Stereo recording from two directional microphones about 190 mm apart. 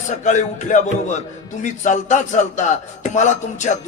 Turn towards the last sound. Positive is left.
turn(degrees=40)  # may be behind; listen again after turning